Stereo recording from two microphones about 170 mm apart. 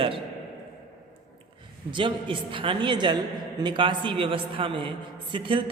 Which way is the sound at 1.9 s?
30° right (ahead or behind).